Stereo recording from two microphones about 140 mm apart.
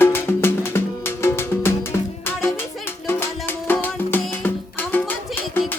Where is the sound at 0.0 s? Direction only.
15° left (ahead or behind).